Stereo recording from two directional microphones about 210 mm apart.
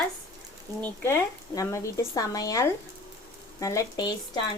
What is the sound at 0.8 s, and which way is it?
Speech, 10° left (ahead or behind).